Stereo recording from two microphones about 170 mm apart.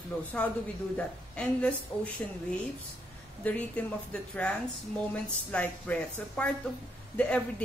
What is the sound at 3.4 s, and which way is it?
Speech, 10° left (ahead or behind).